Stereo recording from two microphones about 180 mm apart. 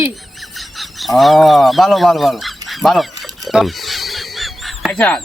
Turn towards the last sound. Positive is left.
turn(degrees=5)  # may be behind; listen again after turning